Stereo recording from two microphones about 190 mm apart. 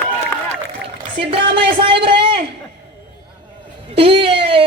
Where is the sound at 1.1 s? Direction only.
25° right (ahead or behind).